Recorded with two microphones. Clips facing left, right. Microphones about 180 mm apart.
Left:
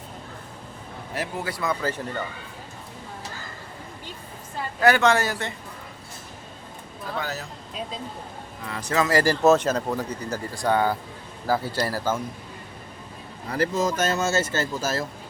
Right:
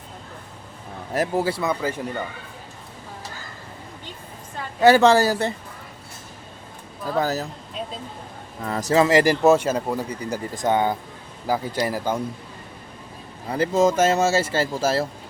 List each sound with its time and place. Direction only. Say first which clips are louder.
1.1 s speech: right 8 dB; 45° right (ahead or behind)
1.5 s speech: right 4 dB; 25° right (ahead or behind)
1.8 s speech: right 2 dB; 10° right (ahead or behind)
4.8 s speech: right 5 dB; 30° right (ahead or behind)
7.2 s speech: right 9 dB; 40° right (ahead or behind)
8.6 s speech: right 6 dB; 40° right (ahead or behind); by 12.2 s 15° right (ahead or behind)
13.5 s speech: right 5 dB; 25° right (ahead or behind)